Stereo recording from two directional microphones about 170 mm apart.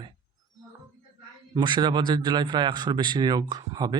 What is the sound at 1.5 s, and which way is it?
Speech, 25° right (ahead or behind).